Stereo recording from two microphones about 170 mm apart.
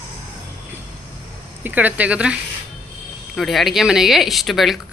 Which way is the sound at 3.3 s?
Centre (ahead or behind).